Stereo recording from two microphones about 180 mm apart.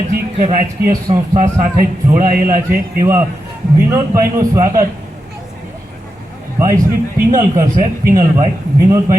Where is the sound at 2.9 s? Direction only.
15° right (ahead or behind).